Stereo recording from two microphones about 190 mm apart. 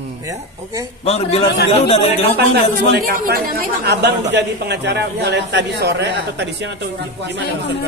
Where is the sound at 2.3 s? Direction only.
65° right (ahead or behind).